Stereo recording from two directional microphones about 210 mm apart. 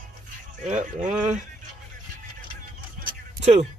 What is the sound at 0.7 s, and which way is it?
Speech, 35° right (ahead or behind).